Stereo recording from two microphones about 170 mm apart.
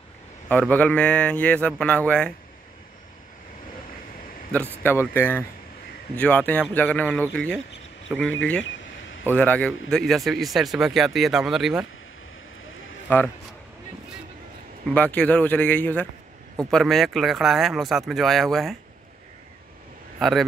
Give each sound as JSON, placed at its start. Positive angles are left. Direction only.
{"t": 0.5, "sound": "a man's voice", "side_deg": 10}
{"t": 4.5, "sound": "a man's voice", "side_deg": 10}
{"t": 13.1, "sound": "a man's voice", "side_deg": 10}
{"t": 15.0, "sound": "a man's voice", "side_deg": 10}
{"t": 20.2, "sound": "a man's voice", "side_deg": 0}